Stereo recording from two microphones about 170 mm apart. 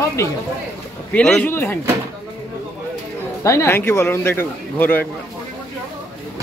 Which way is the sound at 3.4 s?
15° left (ahead or behind).